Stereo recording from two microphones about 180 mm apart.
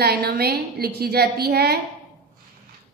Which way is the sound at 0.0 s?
60° right (ahead or behind).